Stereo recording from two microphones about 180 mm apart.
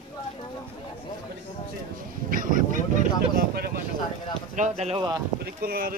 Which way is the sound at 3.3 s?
60° right (ahead or behind).